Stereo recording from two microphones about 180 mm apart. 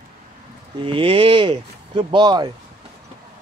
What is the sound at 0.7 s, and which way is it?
Speech, 30° right (ahead or behind).